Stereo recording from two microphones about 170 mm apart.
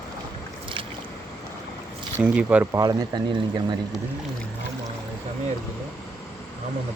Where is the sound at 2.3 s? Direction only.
5° right (ahead or behind).